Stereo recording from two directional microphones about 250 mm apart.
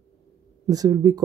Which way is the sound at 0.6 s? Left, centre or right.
Centre.